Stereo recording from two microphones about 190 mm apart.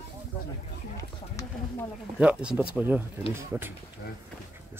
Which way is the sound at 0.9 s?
15° left (ahead or behind).